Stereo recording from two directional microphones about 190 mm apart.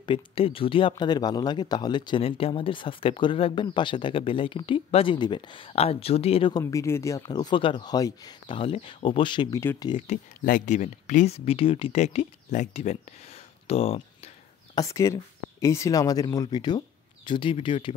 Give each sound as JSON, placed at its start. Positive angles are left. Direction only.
{"t": 0.0, "sound": "speech", "side_deg": 25}
{"t": 6.6, "sound": "speech", "side_deg": 15}
{"t": 9.8, "sound": "speech", "side_deg": 30}
{"t": 10.4, "sound": "speech", "side_deg": 45}
{"t": 14.8, "sound": "speech", "side_deg": 15}